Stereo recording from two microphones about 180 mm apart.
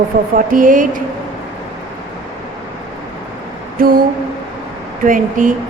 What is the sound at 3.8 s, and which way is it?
Speech, 50° right (ahead or behind).